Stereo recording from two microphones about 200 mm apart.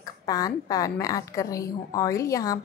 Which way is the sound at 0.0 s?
20° left (ahead or behind).